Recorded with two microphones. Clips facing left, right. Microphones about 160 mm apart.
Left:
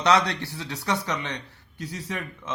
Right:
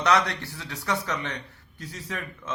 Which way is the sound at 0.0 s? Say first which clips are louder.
Left 2 dB; 20° left (ahead or behind).